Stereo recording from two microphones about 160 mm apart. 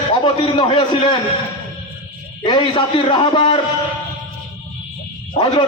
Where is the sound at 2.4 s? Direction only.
30° left (ahead or behind).